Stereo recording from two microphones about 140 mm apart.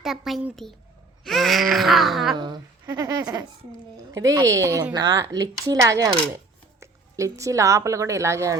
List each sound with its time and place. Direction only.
0.0 s baby cry: centre (ahead or behind)
2.3 s a woman's voice: 30° right (ahead or behind)